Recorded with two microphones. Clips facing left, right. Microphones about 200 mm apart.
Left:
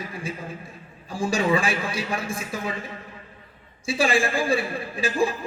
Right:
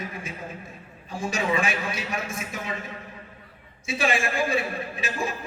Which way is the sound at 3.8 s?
30° left (ahead or behind).